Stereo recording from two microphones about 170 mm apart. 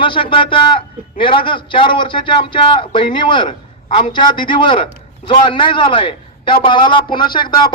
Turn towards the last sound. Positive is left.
turn(degrees=25)  # may be behind; listen again after turning